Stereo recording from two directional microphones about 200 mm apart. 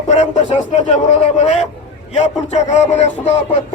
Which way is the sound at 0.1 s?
35° left (ahead or behind).